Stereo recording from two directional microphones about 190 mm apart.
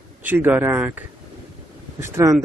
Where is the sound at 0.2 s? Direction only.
10° right (ahead or behind).